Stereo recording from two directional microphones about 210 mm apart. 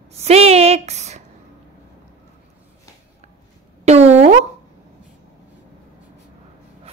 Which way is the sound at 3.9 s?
30° right (ahead or behind).